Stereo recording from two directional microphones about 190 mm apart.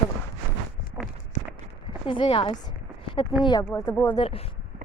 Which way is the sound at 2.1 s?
30° left (ahead or behind).